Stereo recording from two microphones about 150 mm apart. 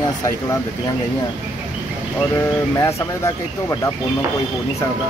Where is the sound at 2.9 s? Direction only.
20° left (ahead or behind).